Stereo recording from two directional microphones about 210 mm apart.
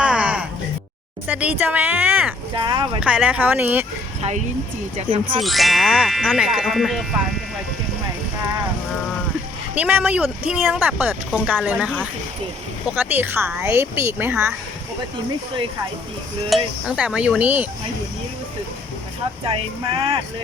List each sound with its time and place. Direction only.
0.0 s music: 5° right (ahead or behind)
1.3 s speech: 5° right (ahead or behind)
2.6 s music: 20° right (ahead or behind)
3.0 s speech: 5° right (ahead or behind)
4.2 s speech: 35° right (ahead or behind)
4.9 s music: 25° right (ahead or behind)
5.4 s speech: centre (ahead or behind)
9.7 s speech: 5° right (ahead or behind)
13.0 s speech: 10° right (ahead or behind)
16.5 s speech: centre (ahead or behind)
19.5 s music: 25° right (ahead or behind)